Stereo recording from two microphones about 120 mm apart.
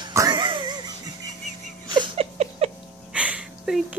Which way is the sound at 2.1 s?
60° right (ahead or behind).